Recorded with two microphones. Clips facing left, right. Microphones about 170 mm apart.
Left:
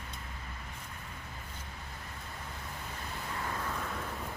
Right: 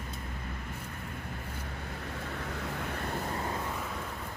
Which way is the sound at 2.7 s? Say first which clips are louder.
Right 8 dB; 70° right (ahead or behind).